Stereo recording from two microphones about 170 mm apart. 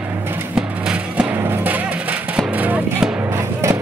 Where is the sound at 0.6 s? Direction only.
5° right (ahead or behind).